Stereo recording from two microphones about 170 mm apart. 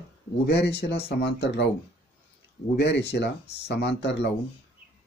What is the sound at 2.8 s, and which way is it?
Speech, 80° left.